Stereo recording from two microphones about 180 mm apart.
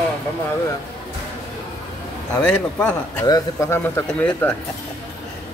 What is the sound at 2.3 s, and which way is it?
Speech, 5° left (ahead or behind).